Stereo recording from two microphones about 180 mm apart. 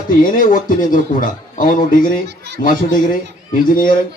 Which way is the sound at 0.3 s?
50° left (ahead or behind).